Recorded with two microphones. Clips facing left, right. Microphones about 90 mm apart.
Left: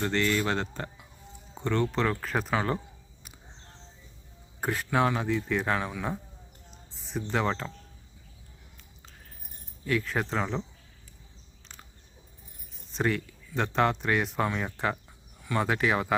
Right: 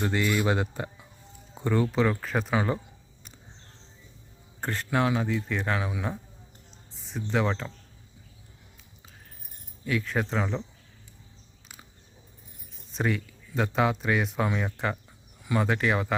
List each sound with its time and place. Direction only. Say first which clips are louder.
0.0 s a man's voice: right 1 dB; 10° right (ahead or behind)
4.6 s speech: left 1 dB; 5° left (ahead or behind)
9.8 s speech: even; centre (ahead or behind)
12.9 s speech: even; centre (ahead or behind)